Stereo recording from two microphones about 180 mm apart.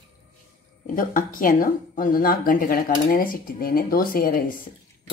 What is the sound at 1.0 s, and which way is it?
Speech, 50° left (ahead or behind).